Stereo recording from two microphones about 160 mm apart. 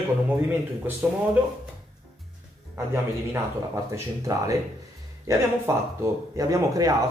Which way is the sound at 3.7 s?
20° right (ahead or behind).